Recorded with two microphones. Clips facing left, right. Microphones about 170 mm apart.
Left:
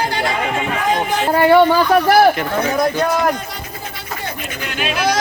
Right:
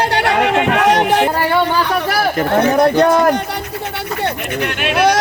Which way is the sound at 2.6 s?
65° right (ahead or behind).